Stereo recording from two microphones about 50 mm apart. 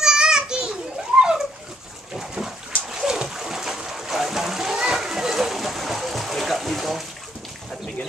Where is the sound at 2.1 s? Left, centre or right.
Centre.